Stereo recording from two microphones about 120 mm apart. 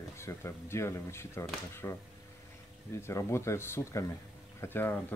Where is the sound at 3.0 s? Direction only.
25° left (ahead or behind).